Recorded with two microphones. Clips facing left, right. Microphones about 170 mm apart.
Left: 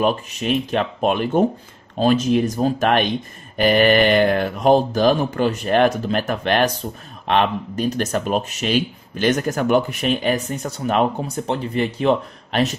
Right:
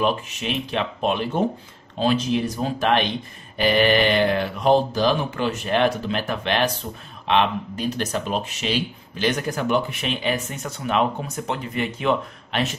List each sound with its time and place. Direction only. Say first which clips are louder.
0.0 s speech: left 3 dB; 45° left (ahead or behind)